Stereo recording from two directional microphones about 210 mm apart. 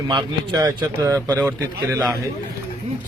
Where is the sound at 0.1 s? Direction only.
20° right (ahead or behind).